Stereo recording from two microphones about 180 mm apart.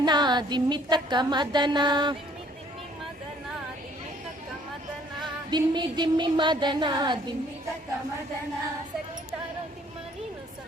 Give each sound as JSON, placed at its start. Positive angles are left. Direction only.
{"t": 0.0, "sound": "music", "side_deg": -25}
{"t": 5.2, "sound": "music", "side_deg": -25}